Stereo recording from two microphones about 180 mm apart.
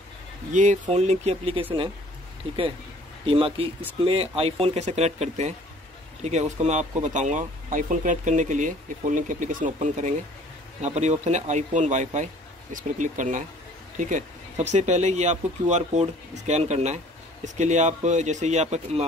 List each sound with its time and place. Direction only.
0.5 s speech: 45° right (ahead or behind)
3.3 s speech: 30° right (ahead or behind)